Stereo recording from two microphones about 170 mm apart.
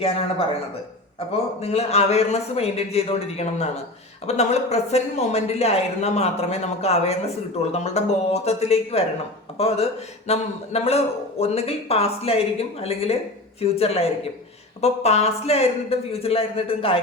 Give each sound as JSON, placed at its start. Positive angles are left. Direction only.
{"t": 0.0, "sound": "speech", "side_deg": 35}